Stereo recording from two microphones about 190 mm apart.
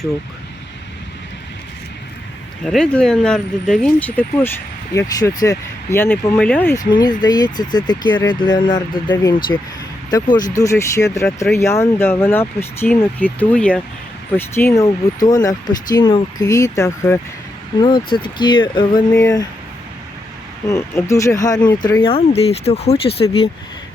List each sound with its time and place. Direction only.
2.6 s speech: 5° left (ahead or behind)
6.9 s speech: 20° left (ahead or behind)
20.7 s speech: 15° left (ahead or behind); by 23.5 s 30° left (ahead or behind)